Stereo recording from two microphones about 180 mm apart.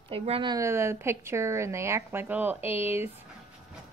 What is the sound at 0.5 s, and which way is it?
A woman's voice, 15° right (ahead or behind).